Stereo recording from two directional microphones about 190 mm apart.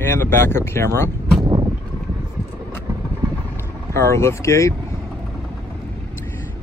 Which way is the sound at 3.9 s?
15° left (ahead or behind).